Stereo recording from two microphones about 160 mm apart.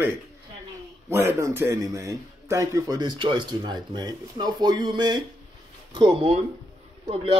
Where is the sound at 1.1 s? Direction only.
15° right (ahead or behind).